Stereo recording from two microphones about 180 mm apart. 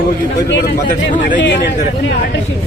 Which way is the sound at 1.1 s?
50° left (ahead or behind).